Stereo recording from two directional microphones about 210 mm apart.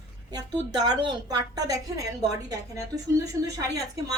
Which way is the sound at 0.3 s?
20° right (ahead or behind).